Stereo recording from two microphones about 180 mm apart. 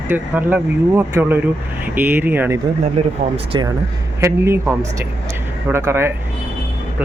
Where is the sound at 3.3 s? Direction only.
30° right (ahead or behind).